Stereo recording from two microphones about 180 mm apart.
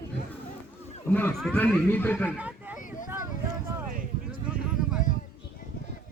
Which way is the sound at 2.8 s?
45° left (ahead or behind).